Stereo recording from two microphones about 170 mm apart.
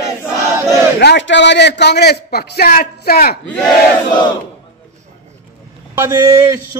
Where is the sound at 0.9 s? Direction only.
85° left; by 3.3 s 60° left (ahead or behind).